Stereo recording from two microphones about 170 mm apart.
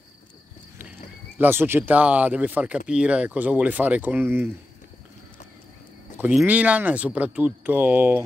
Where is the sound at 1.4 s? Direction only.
10° right (ahead or behind).